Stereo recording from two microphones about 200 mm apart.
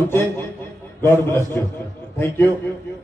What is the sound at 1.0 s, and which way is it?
A man's voice, 10° left (ahead or behind).